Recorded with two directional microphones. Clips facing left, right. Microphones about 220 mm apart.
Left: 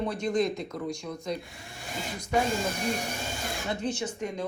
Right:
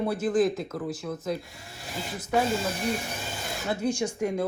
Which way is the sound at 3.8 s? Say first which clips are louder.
Right 8 dB; 10° right (ahead or behind).